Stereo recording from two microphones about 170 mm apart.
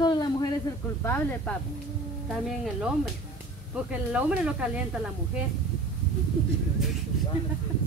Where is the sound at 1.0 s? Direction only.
10° left (ahead or behind).